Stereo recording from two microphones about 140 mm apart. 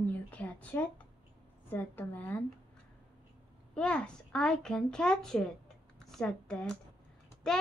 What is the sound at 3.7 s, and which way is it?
A child's voice, 5° left (ahead or behind).